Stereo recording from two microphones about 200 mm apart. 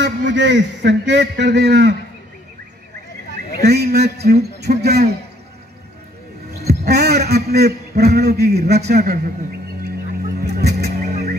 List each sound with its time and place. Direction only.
0.0 s a man's voice: 60° right (ahead or behind)
3.6 s a man's voice: 55° right (ahead or behind)
6.7 s a man's voice: 55° right (ahead or behind)
10.4 s music: 55° right (ahead or behind)